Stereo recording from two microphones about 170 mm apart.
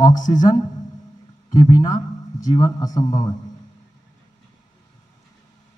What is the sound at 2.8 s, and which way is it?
Speech, 20° left (ahead or behind).